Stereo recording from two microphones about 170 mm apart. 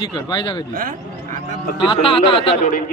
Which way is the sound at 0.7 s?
50° right (ahead or behind).